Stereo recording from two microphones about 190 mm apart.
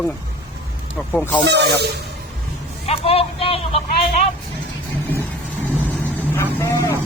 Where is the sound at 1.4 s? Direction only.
60° right (ahead or behind).